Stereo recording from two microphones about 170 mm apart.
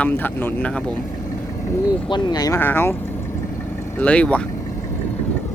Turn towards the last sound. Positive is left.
turn(degrees=5)  # may be behind; listen again after turning